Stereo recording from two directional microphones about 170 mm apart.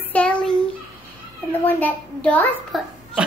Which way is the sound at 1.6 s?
10° left (ahead or behind).